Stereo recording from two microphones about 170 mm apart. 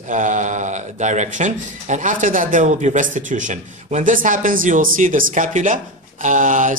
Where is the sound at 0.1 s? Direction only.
45° right (ahead or behind).